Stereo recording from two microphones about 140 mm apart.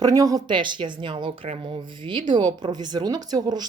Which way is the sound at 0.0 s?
25° right (ahead or behind).